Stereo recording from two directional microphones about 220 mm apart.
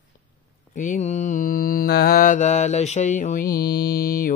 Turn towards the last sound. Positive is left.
turn(degrees=40)  # may be behind; listen again after turning